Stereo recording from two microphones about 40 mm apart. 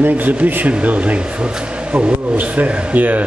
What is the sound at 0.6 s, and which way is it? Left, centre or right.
A man's voice, right.